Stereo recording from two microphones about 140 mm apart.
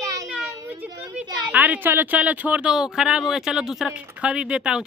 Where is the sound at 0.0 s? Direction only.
25° right (ahead or behind).